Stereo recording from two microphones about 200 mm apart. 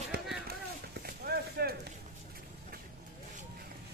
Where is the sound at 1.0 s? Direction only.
50° right (ahead or behind).